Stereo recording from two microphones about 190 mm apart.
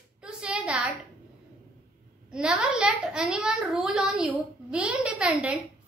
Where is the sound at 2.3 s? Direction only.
5° right (ahead or behind).